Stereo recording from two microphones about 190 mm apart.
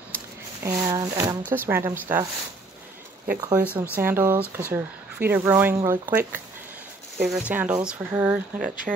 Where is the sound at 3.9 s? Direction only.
10° right (ahead or behind).